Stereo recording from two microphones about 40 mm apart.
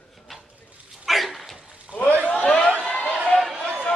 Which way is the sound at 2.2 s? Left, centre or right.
Left.